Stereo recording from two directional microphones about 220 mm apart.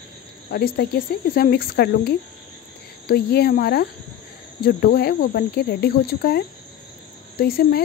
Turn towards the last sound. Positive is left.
turn(degrees=45)  # may be behind; listen again after turning